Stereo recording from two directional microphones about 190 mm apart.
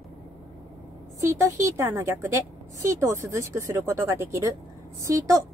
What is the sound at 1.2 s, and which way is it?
A woman's voice, 15° right (ahead or behind).